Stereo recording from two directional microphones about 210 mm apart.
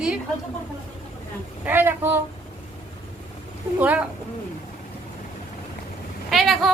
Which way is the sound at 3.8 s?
5° right (ahead or behind).